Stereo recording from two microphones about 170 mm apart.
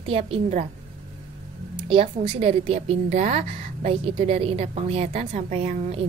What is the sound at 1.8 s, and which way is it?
A woman's voice, 30° right (ahead or behind).